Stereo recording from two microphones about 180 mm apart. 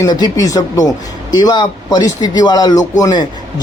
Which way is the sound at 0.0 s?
20° left (ahead or behind).